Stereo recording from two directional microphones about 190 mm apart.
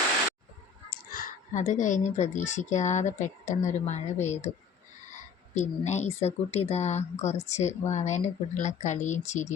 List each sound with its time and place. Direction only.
0.9 s a woman's voice: 50° left (ahead or behind)